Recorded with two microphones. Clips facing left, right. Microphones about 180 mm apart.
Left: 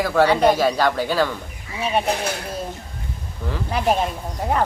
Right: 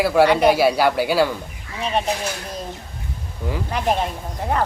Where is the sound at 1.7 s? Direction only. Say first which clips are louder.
Left 1 dB; 10° left (ahead or behind).